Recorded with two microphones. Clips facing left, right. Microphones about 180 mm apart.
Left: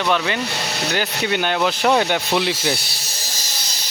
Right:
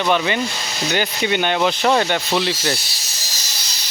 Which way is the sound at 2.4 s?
60° left (ahead or behind).